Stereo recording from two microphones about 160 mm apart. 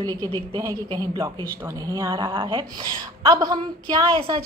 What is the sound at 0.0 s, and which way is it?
A woman's voice, 25° right (ahead or behind).